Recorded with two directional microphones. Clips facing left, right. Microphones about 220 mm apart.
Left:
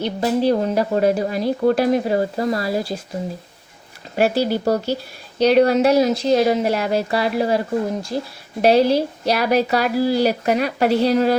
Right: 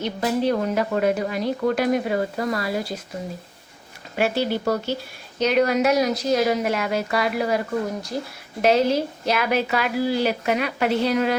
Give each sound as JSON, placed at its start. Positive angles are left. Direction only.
{"t": 0.0, "sound": "speech", "side_deg": 30}
{"t": 4.1, "sound": "speech", "side_deg": 40}